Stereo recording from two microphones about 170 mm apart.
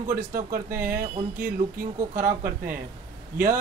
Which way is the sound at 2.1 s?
55° right (ahead or behind).